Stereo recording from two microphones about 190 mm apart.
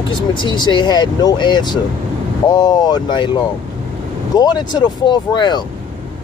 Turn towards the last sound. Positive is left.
turn(degrees=25)  # may be behind; listen again after turning